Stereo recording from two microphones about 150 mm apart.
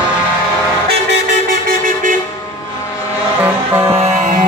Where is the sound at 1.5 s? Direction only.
65° right (ahead or behind).